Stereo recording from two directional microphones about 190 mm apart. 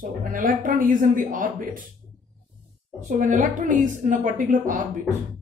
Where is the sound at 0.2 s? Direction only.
45° right (ahead or behind).